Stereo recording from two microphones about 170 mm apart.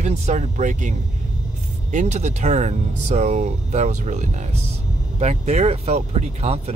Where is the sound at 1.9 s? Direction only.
40° right (ahead or behind).